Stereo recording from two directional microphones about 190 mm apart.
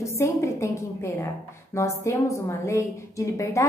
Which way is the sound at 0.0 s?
15° left (ahead or behind).